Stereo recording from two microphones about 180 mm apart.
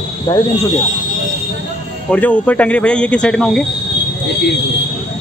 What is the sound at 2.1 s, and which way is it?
Speech, 10° left (ahead or behind).